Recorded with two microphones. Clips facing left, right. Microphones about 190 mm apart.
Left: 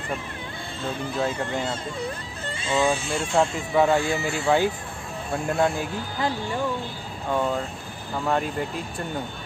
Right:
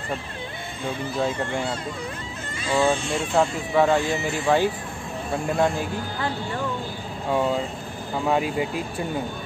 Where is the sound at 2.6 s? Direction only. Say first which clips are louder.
Right 2 dB; 20° left (ahead or behind).